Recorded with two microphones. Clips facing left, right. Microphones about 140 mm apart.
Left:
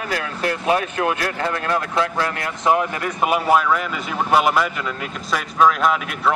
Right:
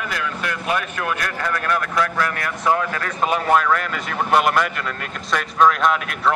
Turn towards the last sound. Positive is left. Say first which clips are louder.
# even
turn(degrees=5)  # may be behind; listen again after turning